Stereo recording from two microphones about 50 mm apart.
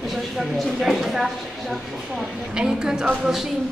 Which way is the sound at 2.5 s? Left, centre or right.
Centre.